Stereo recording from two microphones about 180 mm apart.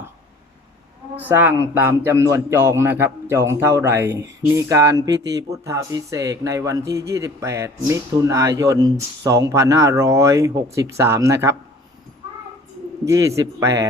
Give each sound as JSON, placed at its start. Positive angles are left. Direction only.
{"t": 1.2, "sound": "speech", "side_deg": -10}
{"t": 13.1, "sound": "speech", "side_deg": -15}